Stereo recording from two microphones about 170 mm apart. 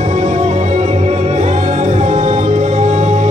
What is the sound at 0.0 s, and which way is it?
Music, 40° right (ahead or behind).